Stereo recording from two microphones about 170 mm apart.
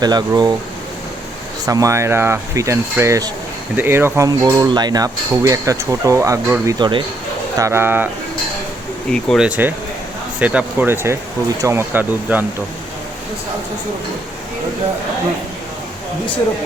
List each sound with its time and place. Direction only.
0.0 s speech: 25° right (ahead or behind)
1.6 s speech: 20° right (ahead or behind)
9.0 s speech: 5° left (ahead or behind)
9.5 s speech: 10° right (ahead or behind)